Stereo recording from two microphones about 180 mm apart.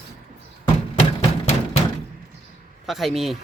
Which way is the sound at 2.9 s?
Centre (ahead or behind).